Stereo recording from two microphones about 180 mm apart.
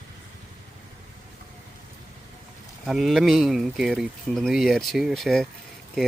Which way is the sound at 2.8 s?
Centre (ahead or behind).